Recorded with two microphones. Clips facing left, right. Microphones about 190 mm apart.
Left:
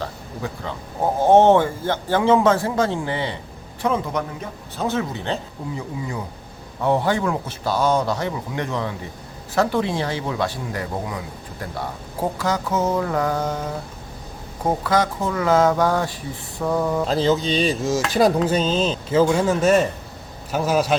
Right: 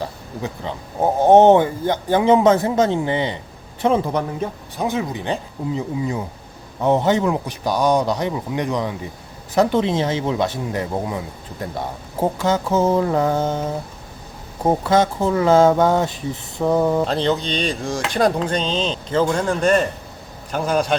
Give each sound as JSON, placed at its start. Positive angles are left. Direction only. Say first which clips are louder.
{"t": 0.0, "sound": "speech", "louder": "right 2 dB", "side_deg": -20}
{"t": 4.8, "sound": "speech", "louder": "right 1 dB", "side_deg": -15}
{"t": 12.2, "sound": "speech", "louder": "right 4 dB", "side_deg": -25}
{"t": 17.1, "sound": "chopping", "louder": "left 1 dB", "side_deg": 0}